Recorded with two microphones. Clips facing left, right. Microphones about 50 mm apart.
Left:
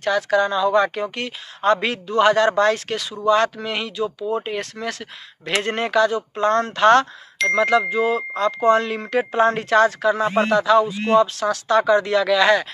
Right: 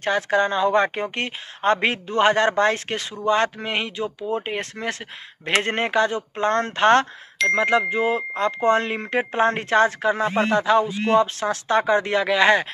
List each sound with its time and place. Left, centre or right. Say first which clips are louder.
0.0 s a woman's voice: left 2 dB; right
10.2 s speech: left 1 dB; centre
10.5 s speech: left 3 dB; right